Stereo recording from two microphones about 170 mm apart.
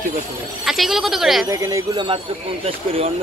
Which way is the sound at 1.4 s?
15° right (ahead or behind).